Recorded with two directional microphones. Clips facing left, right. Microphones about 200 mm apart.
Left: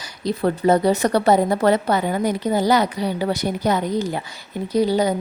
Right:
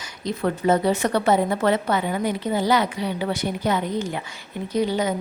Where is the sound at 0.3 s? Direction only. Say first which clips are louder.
Left 3 dB; 35° left (ahead or behind).